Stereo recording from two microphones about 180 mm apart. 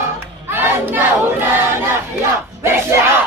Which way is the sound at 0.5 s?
10° right (ahead or behind).